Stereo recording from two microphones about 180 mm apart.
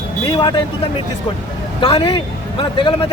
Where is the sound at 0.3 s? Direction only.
25° left (ahead or behind).